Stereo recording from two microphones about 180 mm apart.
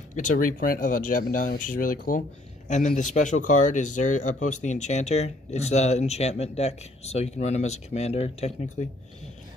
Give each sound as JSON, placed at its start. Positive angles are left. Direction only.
{"t": 0.1, "sound": "speech", "side_deg": 45}